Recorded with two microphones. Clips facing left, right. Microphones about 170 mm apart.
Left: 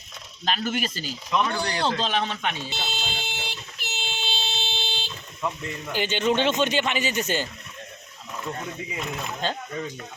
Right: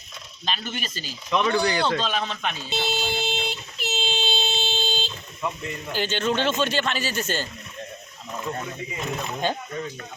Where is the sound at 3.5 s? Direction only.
25° right (ahead or behind).